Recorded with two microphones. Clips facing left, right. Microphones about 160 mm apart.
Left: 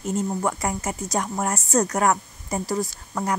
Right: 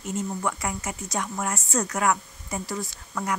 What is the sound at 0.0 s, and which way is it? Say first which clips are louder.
Speech: left 4 dB; 40° left (ahead or behind).